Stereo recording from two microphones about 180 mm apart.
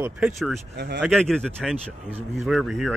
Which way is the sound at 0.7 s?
65° right (ahead or behind).